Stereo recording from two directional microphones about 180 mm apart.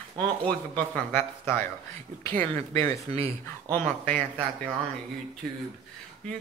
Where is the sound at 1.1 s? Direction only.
10° left (ahead or behind).